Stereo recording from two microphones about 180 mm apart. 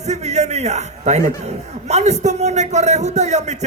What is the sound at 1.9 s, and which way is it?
A man's voice, 40° right (ahead or behind).